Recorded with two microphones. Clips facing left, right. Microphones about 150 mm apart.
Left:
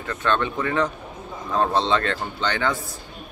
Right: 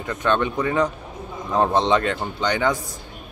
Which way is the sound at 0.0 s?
15° right (ahead or behind).